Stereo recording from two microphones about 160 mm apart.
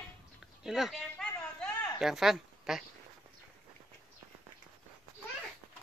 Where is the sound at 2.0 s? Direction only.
Centre (ahead or behind).